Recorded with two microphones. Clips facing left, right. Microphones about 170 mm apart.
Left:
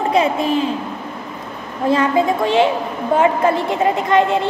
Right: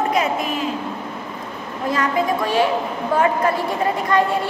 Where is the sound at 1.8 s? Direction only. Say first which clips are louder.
Left 5 dB; 25° left (ahead or behind).